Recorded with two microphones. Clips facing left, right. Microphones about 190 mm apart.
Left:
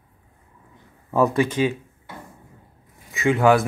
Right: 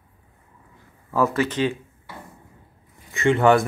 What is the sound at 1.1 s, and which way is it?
Speech, 15° left (ahead or behind).